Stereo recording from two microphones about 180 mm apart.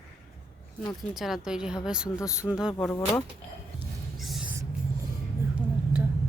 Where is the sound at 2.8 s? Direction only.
5° left (ahead or behind).